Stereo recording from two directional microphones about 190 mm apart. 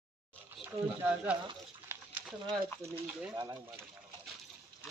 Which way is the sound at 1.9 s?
10° right (ahead or behind).